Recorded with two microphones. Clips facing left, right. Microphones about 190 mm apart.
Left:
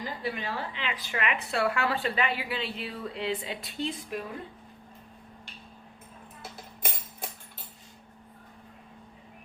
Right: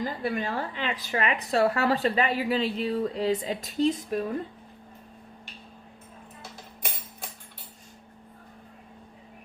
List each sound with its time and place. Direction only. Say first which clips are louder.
0.0 s speech: right 5 dB; 45° right (ahead or behind)